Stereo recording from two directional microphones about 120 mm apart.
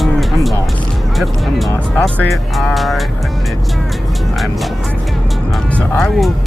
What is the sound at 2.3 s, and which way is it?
Music, centre (ahead or behind).